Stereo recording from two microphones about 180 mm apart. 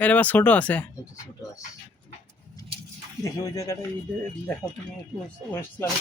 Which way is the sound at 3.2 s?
15° left (ahead or behind).